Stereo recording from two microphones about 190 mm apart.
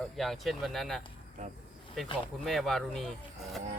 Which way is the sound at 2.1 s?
Centre (ahead or behind).